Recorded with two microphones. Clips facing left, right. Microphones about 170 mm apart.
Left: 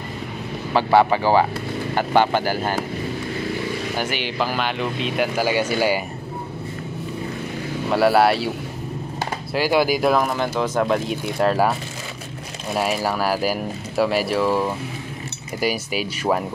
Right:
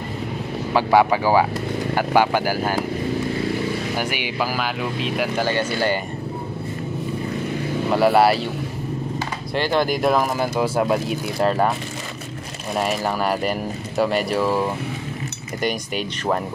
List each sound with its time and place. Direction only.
0.9 s speech: 10° right (ahead or behind)
4.0 s speech: 10° right (ahead or behind); by 5.9 s 10° left (ahead or behind)
7.9 s speech: centre (ahead or behind)
9.5 s speech: 5° left (ahead or behind)
12.7 s speech: centre (ahead or behind)